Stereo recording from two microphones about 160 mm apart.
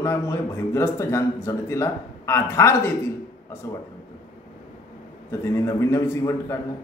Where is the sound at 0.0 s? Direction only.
15° left (ahead or behind).